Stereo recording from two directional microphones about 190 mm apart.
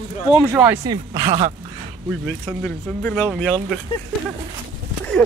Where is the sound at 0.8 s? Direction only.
20° right (ahead or behind).